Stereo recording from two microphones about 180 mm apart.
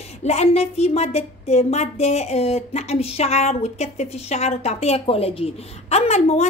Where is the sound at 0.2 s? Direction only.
35° left (ahead or behind).